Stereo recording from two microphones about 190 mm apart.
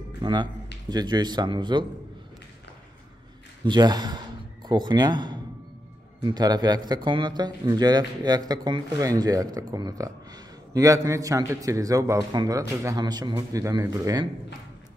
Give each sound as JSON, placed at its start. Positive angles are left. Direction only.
{"t": 0.2, "sound": "a man's voice", "side_deg": -25}
{"t": 3.6, "sound": "a man's voice", "side_deg": -20}